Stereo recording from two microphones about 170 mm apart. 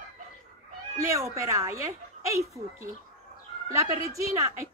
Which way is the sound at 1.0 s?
20° right (ahead or behind).